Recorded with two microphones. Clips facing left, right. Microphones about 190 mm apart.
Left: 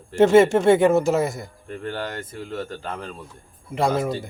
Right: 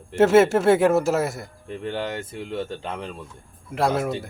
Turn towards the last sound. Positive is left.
turn(degrees=0)  # may be behind; listen again after turning